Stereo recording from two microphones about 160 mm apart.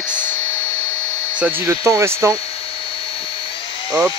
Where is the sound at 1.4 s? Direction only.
15° right (ahead or behind).